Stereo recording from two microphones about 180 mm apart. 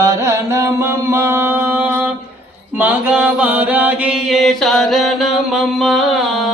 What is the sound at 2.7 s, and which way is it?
Chant, 10° right (ahead or behind).